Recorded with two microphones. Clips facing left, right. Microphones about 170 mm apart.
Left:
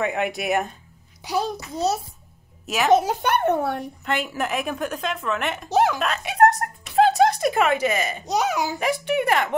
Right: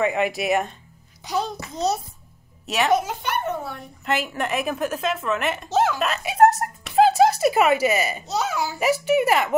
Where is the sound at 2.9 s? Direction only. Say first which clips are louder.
Left 5 dB; 35° left (ahead or behind).